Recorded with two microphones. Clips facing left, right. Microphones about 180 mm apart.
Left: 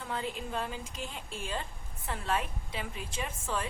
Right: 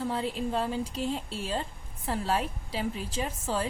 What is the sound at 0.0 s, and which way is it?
A woman's voice, 35° right (ahead or behind).